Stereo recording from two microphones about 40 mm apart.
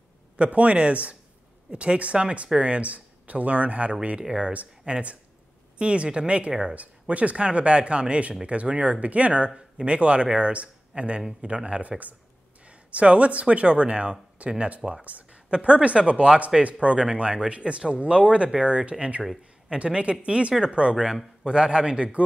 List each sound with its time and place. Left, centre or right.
0.4 s speech: right
4.2 s speech: centre
9.5 s speech: right